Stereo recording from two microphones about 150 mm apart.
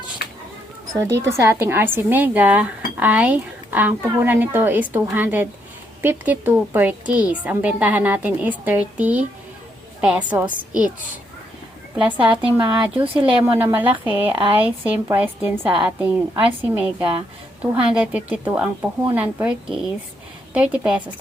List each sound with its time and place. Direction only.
0.9 s speech: 20° right (ahead or behind)
11.9 s speech: 10° right (ahead or behind)